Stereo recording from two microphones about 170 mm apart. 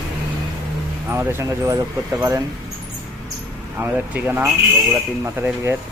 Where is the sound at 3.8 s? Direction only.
10° right (ahead or behind).